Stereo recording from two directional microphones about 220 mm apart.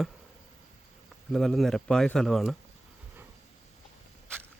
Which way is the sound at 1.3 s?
Centre (ahead or behind).